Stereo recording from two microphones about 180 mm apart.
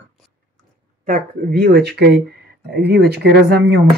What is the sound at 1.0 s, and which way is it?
Speech, 55° right (ahead or behind).